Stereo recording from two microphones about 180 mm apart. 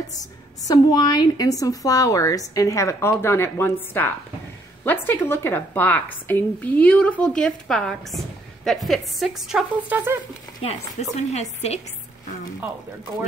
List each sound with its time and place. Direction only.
0.7 s a woman's voice: 25° left (ahead or behind); by 10.1 s 10° right (ahead or behind)
10.6 s speech: 35° left (ahead or behind)